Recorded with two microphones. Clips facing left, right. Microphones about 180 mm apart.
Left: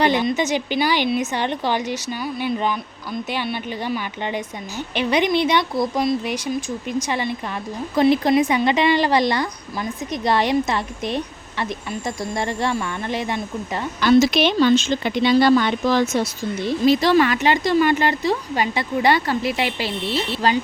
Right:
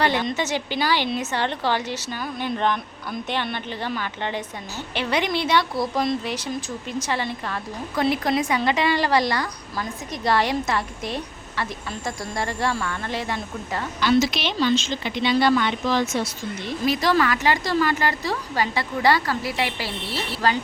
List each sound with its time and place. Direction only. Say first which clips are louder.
0.0 s a woman's voice: left 4 dB; 15° left (ahead or behind)
14.0 s speech: left 6 dB; 50° left (ahead or behind)
16.8 s a woman's voice: left 5 dB; 25° left (ahead or behind)